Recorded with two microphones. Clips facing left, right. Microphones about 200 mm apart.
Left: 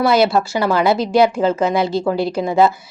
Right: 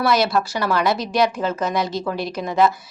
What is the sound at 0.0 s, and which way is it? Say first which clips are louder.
Speech: left 4 dB; 25° left (ahead or behind).